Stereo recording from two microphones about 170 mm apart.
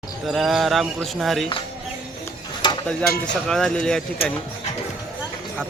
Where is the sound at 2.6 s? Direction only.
25° left (ahead or behind).